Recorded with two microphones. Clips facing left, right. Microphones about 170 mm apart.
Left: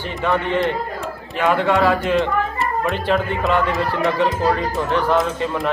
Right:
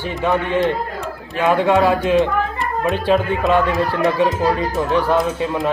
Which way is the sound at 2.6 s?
Centre (ahead or behind).